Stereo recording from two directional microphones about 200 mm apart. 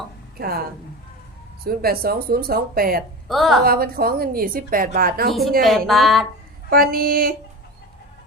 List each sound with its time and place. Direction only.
0.3 s a woman's voice: 50° right (ahead or behind)
1.6 s speech: 50° right (ahead or behind)
3.2 s a woman's voice: centre (ahead or behind)
3.6 s speech: 50° right (ahead or behind)
5.3 s a woman's voice: centre (ahead or behind)
6.7 s speech: 50° right (ahead or behind)